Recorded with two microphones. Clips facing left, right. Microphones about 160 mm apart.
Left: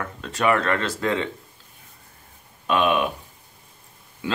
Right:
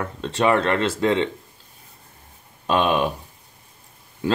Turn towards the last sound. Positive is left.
turn(degrees=-45)  # may be behind; listen again after turning